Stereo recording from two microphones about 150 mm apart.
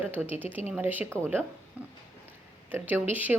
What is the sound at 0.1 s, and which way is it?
A woman's voice, 10° right (ahead or behind).